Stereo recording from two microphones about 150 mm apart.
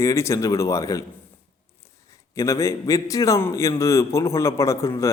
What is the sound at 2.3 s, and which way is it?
A man's voice, 20° left (ahead or behind).